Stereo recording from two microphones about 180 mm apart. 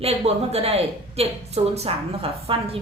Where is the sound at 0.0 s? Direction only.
35° right (ahead or behind).